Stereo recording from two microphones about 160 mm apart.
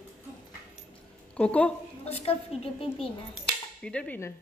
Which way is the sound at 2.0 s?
40° left (ahead or behind).